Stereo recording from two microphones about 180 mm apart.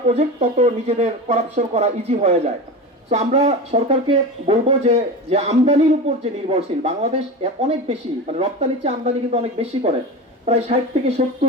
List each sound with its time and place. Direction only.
0.1 s speech: 35° right (ahead or behind)